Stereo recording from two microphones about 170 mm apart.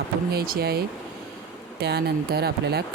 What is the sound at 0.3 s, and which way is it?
Speech, 65° right (ahead or behind).